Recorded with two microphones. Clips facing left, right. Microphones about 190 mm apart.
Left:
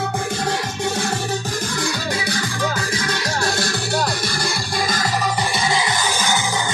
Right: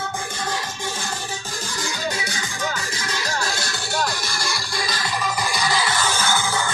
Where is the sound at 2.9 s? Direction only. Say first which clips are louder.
Left 4 dB; 65° left (ahead or behind); by 6.7 s 15° left (ahead or behind).